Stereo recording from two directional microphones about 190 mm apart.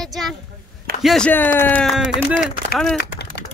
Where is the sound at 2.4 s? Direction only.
50° left (ahead or behind).